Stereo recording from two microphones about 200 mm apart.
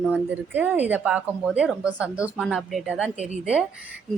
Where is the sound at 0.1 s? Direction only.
10° right (ahead or behind).